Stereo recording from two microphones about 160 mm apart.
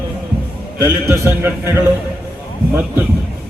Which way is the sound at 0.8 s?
15° right (ahead or behind).